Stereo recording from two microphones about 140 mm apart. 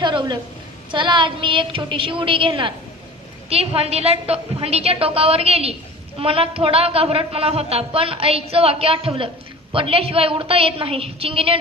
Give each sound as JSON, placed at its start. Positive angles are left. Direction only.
{"t": 0.0, "sound": "a woman's voice", "side_deg": -35}
{"t": 3.5, "sound": "a woman's voice", "side_deg": -45}